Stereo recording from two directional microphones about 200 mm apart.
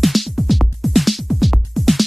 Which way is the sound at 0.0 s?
Centre (ahead or behind).